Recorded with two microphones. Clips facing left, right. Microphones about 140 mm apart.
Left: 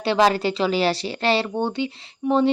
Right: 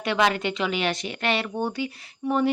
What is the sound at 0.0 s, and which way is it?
Speech, 30° left (ahead or behind).